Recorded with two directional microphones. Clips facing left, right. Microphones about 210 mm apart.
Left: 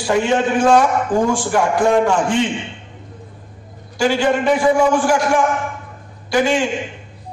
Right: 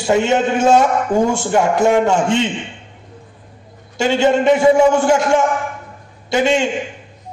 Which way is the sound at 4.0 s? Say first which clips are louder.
Right 2 dB; 25° right (ahead or behind).